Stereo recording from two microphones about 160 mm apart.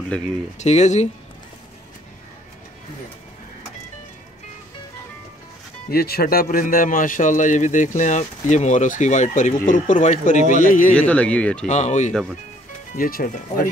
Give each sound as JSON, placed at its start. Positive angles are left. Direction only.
{"t": 0.6, "sound": "a man's voice", "side_deg": 45}
{"t": 5.9, "sound": "a man's voice", "side_deg": 75}
{"t": 11.0, "sound": "speech", "side_deg": 10}
{"t": 11.6, "sound": "a man's voice", "side_deg": 45}
{"t": 12.1, "sound": "speech", "side_deg": 0}
{"t": 12.9, "sound": "speech", "side_deg": 60}